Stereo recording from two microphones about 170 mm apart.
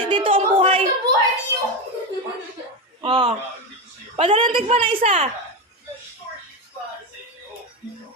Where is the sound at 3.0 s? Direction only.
30° right (ahead or behind).